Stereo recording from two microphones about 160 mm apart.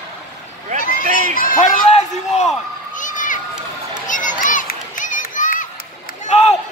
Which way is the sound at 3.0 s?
55° left (ahead or behind).